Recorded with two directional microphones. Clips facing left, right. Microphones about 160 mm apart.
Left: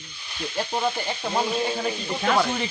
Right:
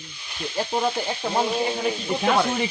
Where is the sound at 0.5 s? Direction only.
10° right (ahead or behind).